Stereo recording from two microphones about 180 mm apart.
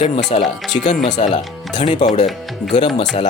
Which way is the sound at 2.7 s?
30° left (ahead or behind).